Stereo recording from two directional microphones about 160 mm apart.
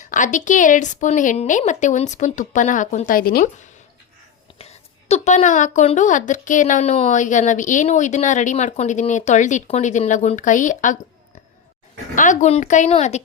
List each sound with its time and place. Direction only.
0.1 s a woman's voice: 50° left (ahead or behind)
4.5 s a woman's voice: 40° left (ahead or behind)
12.1 s a woman's voice: 50° left (ahead or behind)